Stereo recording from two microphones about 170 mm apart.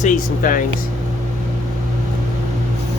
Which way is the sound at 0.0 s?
50° left (ahead or behind).